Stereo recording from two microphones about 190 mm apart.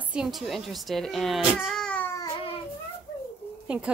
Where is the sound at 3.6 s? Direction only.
5° right (ahead or behind).